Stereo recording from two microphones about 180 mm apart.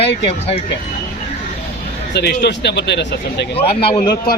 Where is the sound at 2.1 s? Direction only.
65° left (ahead or behind).